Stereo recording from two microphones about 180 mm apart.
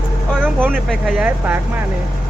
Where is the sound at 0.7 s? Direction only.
Centre (ahead or behind).